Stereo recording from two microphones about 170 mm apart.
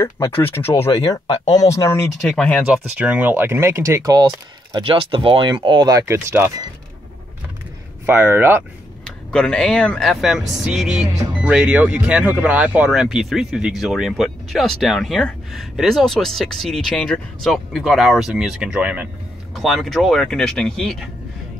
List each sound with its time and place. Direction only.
0.0 s speech: 15° left (ahead or behind)
2.2 s speech: 5° left (ahead or behind)
2.6 s speech: 5° right (ahead or behind)
8.1 s speech: 10° right (ahead or behind)
9.0 s speech: 5° left (ahead or behind)